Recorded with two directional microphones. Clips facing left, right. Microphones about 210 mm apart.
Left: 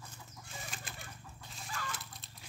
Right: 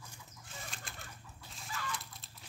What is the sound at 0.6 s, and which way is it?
Chicken, centre (ahead or behind).